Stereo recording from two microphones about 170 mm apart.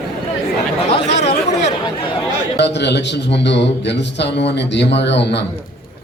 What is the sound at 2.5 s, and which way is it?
A man's voice, 90° left.